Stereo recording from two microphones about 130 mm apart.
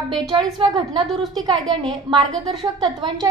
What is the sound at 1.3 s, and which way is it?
A woman's voice, 30° right (ahead or behind).